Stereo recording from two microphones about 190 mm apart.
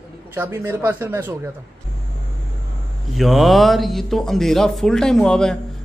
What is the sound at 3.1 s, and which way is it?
Speech, centre (ahead or behind).